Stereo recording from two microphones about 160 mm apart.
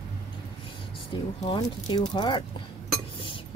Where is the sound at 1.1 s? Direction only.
25° left (ahead or behind).